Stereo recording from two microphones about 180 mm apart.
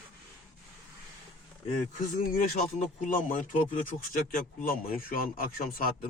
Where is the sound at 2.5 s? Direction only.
45° left (ahead or behind).